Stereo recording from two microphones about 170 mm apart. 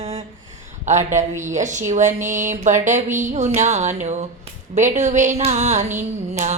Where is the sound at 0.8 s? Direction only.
45° right (ahead or behind).